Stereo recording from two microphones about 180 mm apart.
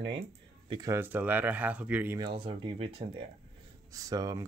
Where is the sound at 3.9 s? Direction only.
20° right (ahead or behind).